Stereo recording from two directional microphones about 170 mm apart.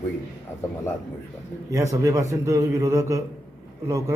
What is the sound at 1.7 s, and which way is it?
A man's voice, 20° right (ahead or behind).